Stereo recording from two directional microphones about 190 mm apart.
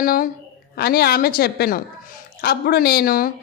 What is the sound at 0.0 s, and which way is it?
A woman's voice, 50° left (ahead or behind).